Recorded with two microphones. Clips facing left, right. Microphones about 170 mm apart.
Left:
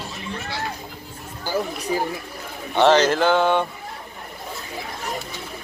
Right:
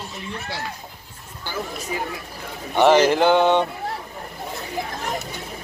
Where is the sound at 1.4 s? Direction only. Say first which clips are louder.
Left 5 dB; 40° left (ahead or behind).